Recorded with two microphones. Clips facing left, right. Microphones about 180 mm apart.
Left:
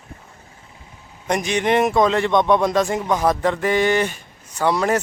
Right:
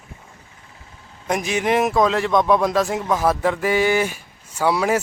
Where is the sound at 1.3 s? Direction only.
5° right (ahead or behind).